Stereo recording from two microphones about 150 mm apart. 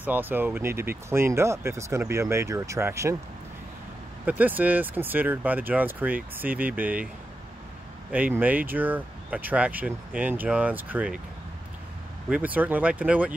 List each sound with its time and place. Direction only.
0.0 s speech: 10° right (ahead or behind)
4.3 s speech: 10° right (ahead or behind)
8.1 s speech: 10° right (ahead or behind)
12.3 s speech: 10° right (ahead or behind)